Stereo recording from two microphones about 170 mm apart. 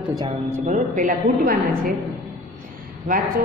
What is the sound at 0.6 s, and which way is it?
A man's voice, 50° right (ahead or behind).